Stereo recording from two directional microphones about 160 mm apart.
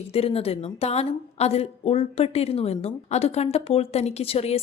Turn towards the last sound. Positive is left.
turn(degrees=40)  # may be behind; listen again after turning